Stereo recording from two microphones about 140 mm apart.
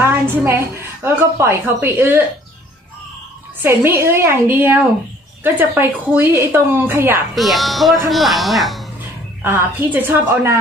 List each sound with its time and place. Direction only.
0.0 s a sound: 15° right (ahead or behind)
1.0 s a woman's voice: 20° right (ahead or behind)
3.6 s a woman's voice: 15° right (ahead or behind)
7.3 s a man's voice: centre (ahead or behind)
9.4 s a woman's voice: 15° right (ahead or behind)